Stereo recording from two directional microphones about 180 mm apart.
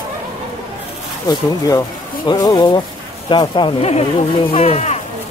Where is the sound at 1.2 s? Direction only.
20° left (ahead or behind); by 4.9 s 35° left (ahead or behind).